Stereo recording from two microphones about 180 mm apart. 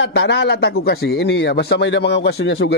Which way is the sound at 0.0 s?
80° left.